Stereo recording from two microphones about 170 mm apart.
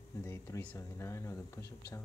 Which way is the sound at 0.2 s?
15° left (ahead or behind).